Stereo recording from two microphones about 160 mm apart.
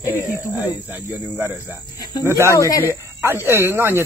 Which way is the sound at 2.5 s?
20° left (ahead or behind).